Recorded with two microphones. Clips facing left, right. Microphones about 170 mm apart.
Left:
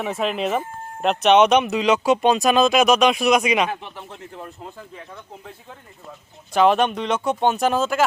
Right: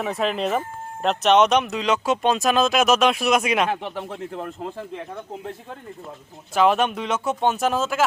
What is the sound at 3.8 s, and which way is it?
Speech, 60° right (ahead or behind).